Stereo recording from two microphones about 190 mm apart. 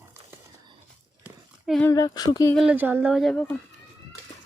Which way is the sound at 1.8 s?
20° left (ahead or behind).